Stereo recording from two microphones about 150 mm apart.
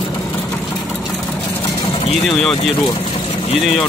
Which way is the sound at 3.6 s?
Centre (ahead or behind).